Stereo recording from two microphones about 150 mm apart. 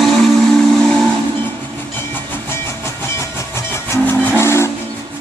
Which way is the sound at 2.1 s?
15° left (ahead or behind).